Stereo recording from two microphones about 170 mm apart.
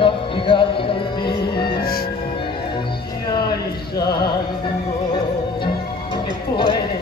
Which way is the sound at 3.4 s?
65° left (ahead or behind).